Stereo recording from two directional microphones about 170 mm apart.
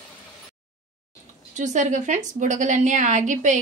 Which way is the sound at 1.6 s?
45° right (ahead or behind).